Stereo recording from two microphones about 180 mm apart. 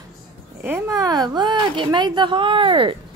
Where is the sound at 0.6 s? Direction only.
15° right (ahead or behind); by 2.9 s 30° right (ahead or behind).